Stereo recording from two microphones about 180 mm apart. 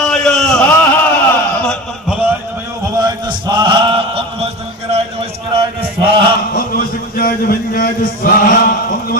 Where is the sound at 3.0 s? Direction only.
25° right (ahead or behind).